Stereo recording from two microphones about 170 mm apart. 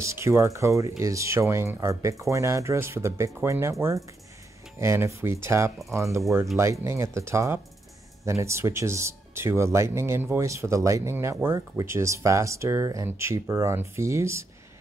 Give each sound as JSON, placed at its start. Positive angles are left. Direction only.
{"t": 0.0, "sound": "speech", "side_deg": -15}
{"t": 4.7, "sound": "speech", "side_deg": -15}